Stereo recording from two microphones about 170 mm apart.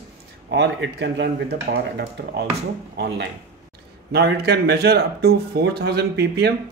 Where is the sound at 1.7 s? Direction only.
70° right (ahead or behind).